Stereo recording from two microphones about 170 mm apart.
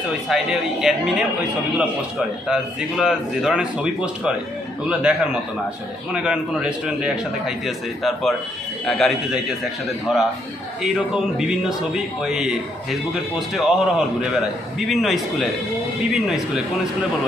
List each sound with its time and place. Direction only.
0.3 s speech: centre (ahead or behind)
2.4 s speech: 5° right (ahead or behind)
11.3 s speech: 5° right (ahead or behind)